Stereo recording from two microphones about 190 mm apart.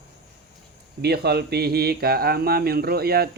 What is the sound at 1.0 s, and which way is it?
Speech, 60° right (ahead or behind).